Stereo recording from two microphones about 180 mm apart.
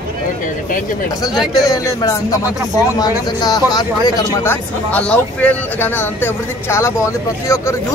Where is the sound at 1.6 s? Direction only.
20° left (ahead or behind).